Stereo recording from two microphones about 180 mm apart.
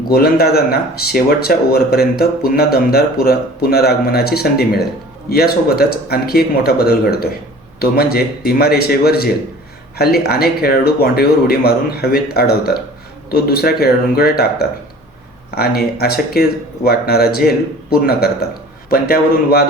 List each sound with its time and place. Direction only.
0.1 s speech: 60° left (ahead or behind)